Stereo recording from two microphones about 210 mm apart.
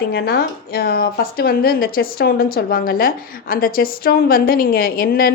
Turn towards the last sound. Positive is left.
turn(degrees=45)  # may be behind; listen again after turning